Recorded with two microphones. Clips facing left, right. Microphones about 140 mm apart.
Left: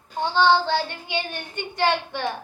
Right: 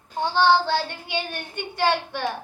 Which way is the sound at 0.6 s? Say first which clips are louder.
Even; 15° left (ahead or behind).